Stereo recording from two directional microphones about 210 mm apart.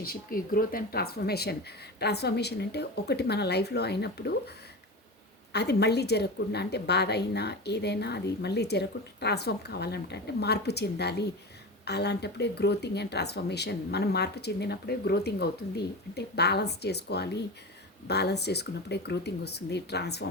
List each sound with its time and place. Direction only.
0.0 s a woman's voice: 45° left (ahead or behind)
5.5 s a woman's voice: 50° left (ahead or behind)